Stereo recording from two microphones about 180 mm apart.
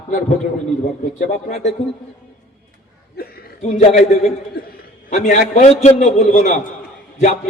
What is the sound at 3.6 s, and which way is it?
Speech, 40° left (ahead or behind).